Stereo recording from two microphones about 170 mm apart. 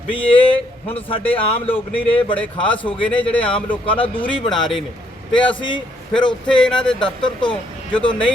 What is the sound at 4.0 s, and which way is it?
Speech, 30° left (ahead or behind).